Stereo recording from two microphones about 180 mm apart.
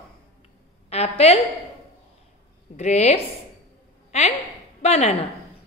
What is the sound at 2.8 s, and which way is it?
Speech, 40° left (ahead or behind).